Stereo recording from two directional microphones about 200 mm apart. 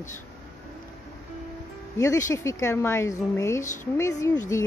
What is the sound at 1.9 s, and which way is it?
A woman's voice, 15° left (ahead or behind).